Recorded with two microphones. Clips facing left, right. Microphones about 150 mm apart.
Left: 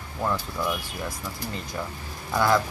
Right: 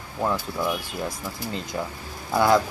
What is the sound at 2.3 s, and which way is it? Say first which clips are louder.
Speech: right 3 dB; 15° right (ahead or behind).